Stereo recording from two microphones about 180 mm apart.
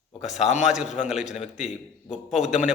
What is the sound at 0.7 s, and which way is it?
A man's voice, 40° left (ahead or behind).